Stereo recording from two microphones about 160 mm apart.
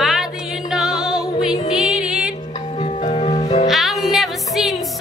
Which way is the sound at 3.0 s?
45° left (ahead or behind).